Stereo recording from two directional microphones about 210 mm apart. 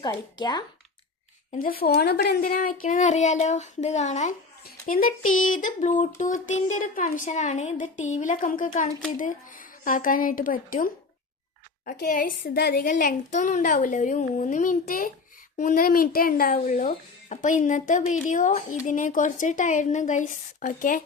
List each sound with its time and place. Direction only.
0.0 s speech: 20° left (ahead or behind)
1.5 s a child's voice: 45° left (ahead or behind)